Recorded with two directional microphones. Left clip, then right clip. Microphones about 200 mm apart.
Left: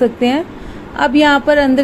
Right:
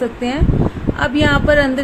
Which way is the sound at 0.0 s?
20° left (ahead or behind).